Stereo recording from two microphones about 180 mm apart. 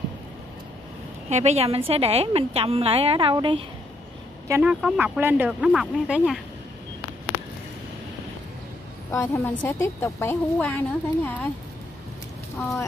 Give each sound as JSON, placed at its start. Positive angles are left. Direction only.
{"t": 1.3, "sound": "a woman's voice", "side_deg": -35}
{"t": 4.5, "sound": "speech", "side_deg": -10}
{"t": 9.1, "sound": "a woman's voice", "side_deg": 15}